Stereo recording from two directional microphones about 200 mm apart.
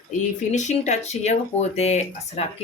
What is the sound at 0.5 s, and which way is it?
Speech, 35° left (ahead or behind).